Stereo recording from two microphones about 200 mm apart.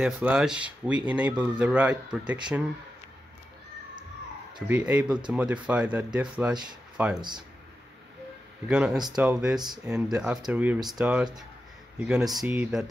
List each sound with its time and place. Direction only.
0.0 s speech: 5° right (ahead or behind)
4.6 s speech: 5° right (ahead or behind)
7.2 s speech: 20° right (ahead or behind)
8.6 s speech: 5° right (ahead or behind)